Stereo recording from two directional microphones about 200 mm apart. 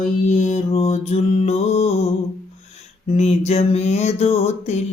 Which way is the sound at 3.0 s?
30° left (ahead or behind).